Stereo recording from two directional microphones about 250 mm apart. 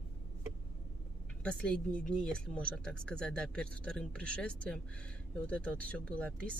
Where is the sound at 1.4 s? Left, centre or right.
Centre.